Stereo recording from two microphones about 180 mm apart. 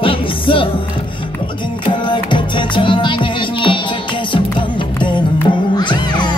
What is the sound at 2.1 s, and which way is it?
Music, 25° left (ahead or behind).